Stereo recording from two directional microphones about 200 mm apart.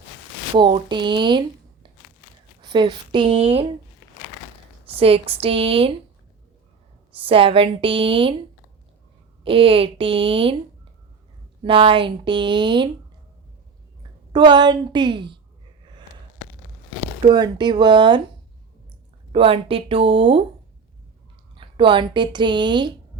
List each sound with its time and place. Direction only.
0.5 s speech: 25° right (ahead or behind)
4.9 s speech: 30° right (ahead or behind)
7.3 s speech: 25° right (ahead or behind)
9.4 s speech: 25° right (ahead or behind)
11.6 s speech: 25° right (ahead or behind)
14.3 s speech: 20° right (ahead or behind)
17.2 s speech: 20° right (ahead or behind)
19.3 s speech: 30° right (ahead or behind)
21.5 s speech: 25° right (ahead or behind)